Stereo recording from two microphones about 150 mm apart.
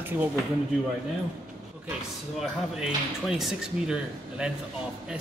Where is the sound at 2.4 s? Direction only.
5° right (ahead or behind).